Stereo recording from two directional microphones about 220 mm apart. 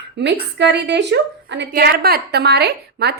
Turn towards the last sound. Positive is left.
turn(degrees=-50)  # may be behind; listen again after turning